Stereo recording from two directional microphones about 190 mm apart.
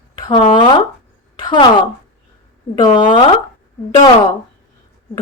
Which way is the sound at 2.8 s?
25° left (ahead or behind).